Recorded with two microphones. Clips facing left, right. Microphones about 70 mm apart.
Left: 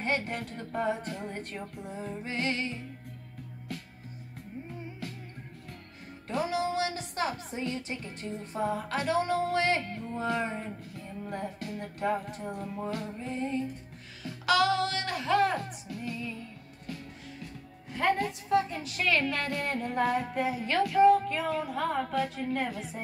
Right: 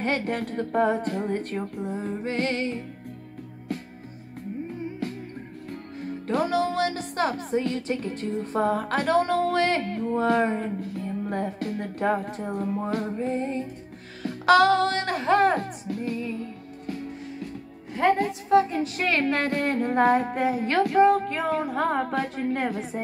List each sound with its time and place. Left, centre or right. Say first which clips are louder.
0.0 s speech: right 5 dB; right
5.0 s music: right 9 dB; right
6.2 s speech: right 6 dB; right
17.9 s speech: right 6 dB; right